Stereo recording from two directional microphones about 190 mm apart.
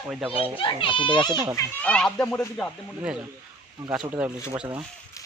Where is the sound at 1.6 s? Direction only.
5° left (ahead or behind).